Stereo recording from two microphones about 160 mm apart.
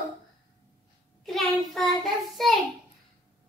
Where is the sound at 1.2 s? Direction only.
Centre (ahead or behind).